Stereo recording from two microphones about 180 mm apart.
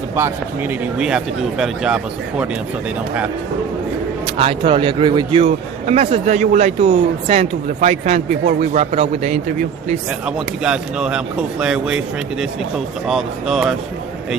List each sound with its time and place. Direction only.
0.2 s speech: 10° right (ahead or behind)
4.4 s a man's voice: 30° right (ahead or behind)
10.2 s speech: 5° right (ahead or behind)